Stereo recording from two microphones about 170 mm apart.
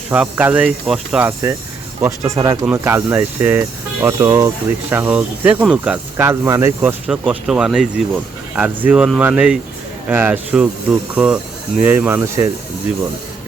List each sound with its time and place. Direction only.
0.1 s speech: 10° right (ahead or behind)
2.0 s speech: 20° right (ahead or behind)
7.1 s speech: 5° right (ahead or behind)